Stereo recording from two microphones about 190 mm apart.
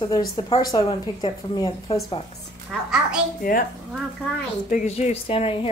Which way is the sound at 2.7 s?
Centre (ahead or behind).